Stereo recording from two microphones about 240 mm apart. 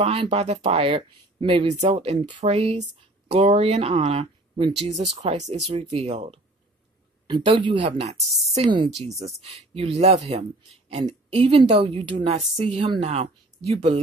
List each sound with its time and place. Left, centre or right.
0.0 s speech: right